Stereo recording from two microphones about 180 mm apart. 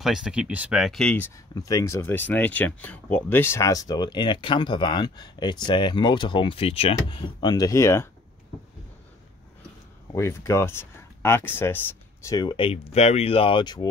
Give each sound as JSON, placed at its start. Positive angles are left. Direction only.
{"t": 0.0, "sound": "speech", "side_deg": -5}
{"t": 10.1, "sound": "speech", "side_deg": 15}